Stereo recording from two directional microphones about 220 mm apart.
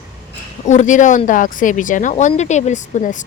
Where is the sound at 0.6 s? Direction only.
35° left (ahead or behind).